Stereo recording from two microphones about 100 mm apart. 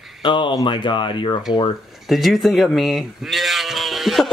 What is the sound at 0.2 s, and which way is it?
Speech, 55° left (ahead or behind).